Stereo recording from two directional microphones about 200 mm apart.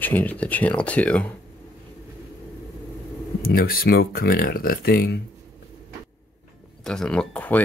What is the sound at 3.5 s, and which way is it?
Speech, 50° left (ahead or behind).